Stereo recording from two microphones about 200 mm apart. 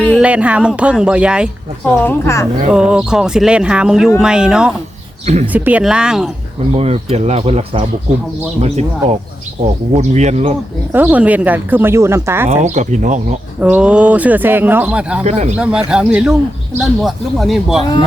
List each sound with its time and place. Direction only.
0.2 s speech: 5° right (ahead or behind)
2.0 s a woman's voice: 15° left (ahead or behind)
2.7 s speech: 5° right (ahead or behind)
5.2 s speech: 35° right (ahead or behind)
5.5 s speech: 10° right (ahead or behind)
6.7 s speech: 30° right (ahead or behind)
10.9 s speech: 10° right (ahead or behind)
12.5 s speech: 35° right (ahead or behind)
13.6 s speech: 5° right (ahead or behind)
15.2 s speech: 35° right (ahead or behind)
15.5 s speech: 5° right (ahead or behind)